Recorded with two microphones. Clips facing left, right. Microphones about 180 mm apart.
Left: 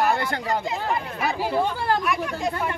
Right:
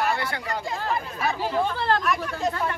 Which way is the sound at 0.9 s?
15° left (ahead or behind).